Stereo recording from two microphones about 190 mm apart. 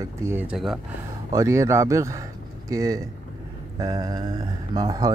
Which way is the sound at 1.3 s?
15° right (ahead or behind).